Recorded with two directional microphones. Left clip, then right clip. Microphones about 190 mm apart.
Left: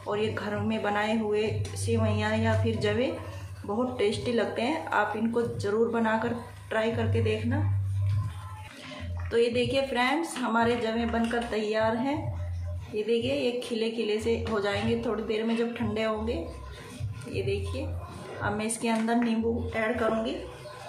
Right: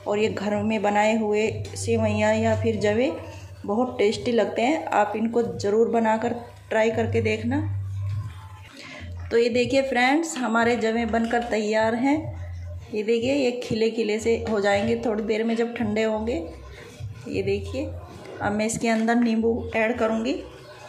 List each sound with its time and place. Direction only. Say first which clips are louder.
0.1 s speech: right 6 dB; 25° right (ahead or behind)
9.3 s a woman's voice: right 5 dB; 30° right (ahead or behind)